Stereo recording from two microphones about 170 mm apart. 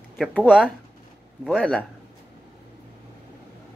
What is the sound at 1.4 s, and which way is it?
Speech, centre (ahead or behind).